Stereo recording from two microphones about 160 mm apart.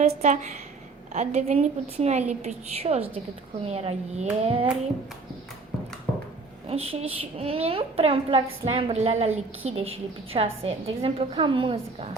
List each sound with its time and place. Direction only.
0.0 s a woman's voice: 45° right (ahead or behind)
6.7 s a woman's voice: 40° right (ahead or behind)